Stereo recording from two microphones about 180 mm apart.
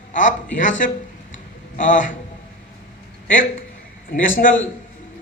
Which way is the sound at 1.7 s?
45° left (ahead or behind).